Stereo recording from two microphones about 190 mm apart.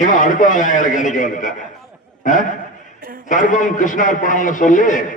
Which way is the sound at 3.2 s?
40° left (ahead or behind).